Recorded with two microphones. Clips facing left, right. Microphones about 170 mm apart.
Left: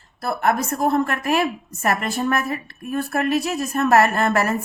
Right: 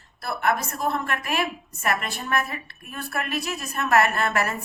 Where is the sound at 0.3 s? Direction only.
50° left (ahead or behind).